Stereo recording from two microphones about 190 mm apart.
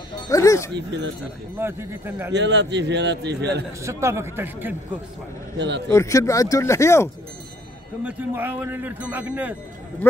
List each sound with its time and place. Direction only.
0.3 s speech: 15° left (ahead or behind)
0.7 s speech: 70° right (ahead or behind)
1.6 s speech: 10° right (ahead or behind)
2.3 s a man's voice: 65° right (ahead or behind)
3.8 s speech: 15° right (ahead or behind)
5.6 s a man's voice: 65° right (ahead or behind)
5.9 s speech: 15° left (ahead or behind)
8.0 s speech: 10° right (ahead or behind)